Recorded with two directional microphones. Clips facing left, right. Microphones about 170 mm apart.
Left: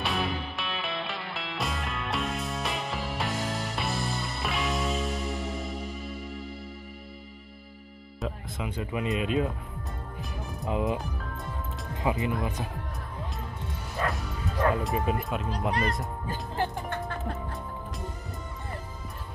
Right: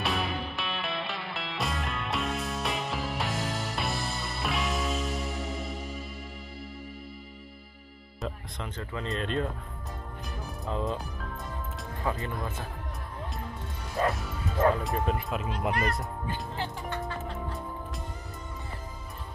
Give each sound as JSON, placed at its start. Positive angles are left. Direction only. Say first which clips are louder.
{"t": 0.0, "sound": "music", "louder": "left 1 dB", "side_deg": 0}
{"t": 8.2, "sound": "speech", "louder": "left 3 dB", "side_deg": 10}
{"t": 10.7, "sound": "speech", "louder": "left 3 dB", "side_deg": 15}
{"t": 12.0, "sound": "speech", "louder": "left 4 dB", "side_deg": 15}
{"t": 14.0, "sound": "bow-wow", "louder": "right 1 dB", "side_deg": 0}
{"t": 14.8, "sound": "speech", "louder": "left 1 dB", "side_deg": 5}
{"t": 16.3, "sound": "music", "louder": "left 6 dB", "side_deg": 50}